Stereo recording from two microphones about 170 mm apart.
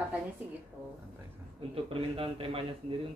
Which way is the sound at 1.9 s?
35° right (ahead or behind).